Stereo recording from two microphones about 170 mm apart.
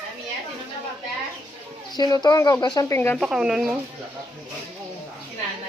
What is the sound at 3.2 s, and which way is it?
Speech, 5° right (ahead or behind).